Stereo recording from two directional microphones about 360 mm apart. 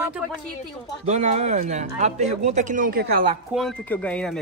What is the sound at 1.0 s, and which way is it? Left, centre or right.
Speech, centre.